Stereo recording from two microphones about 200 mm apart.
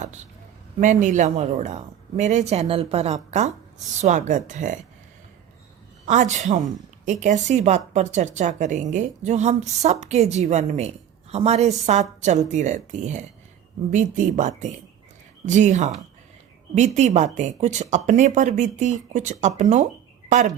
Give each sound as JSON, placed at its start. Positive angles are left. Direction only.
{"t": 0.0, "sound": "speech", "side_deg": -35}
{"t": 6.1, "sound": "speech", "side_deg": -35}